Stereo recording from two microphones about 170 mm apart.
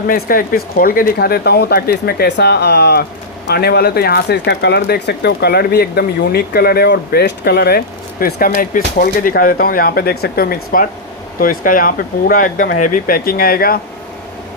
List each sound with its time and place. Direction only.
0.1 s speech: 55° left (ahead or behind)